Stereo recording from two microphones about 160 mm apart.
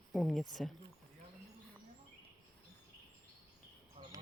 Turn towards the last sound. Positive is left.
turn(degrees=-40)  # may be behind; listen again after turning